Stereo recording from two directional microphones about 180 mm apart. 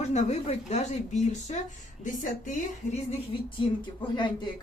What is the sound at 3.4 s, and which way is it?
Speech, 25° left (ahead or behind).